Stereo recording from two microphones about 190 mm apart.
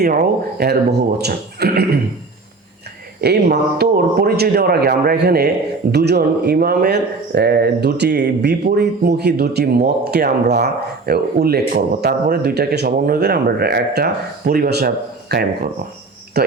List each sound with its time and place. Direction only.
0.0 s speech: 50° right (ahead or behind)
3.2 s speech: 55° right (ahead or behind)